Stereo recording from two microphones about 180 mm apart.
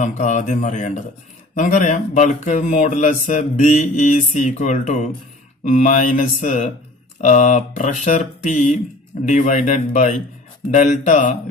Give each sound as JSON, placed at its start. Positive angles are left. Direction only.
{"t": 0.0, "sound": "speech", "side_deg": 40}